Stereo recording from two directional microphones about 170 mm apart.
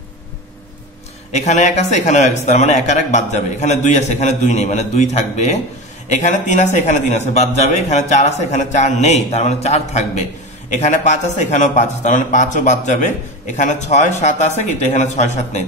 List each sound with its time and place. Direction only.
1.3 s a man's voice: 40° left (ahead or behind)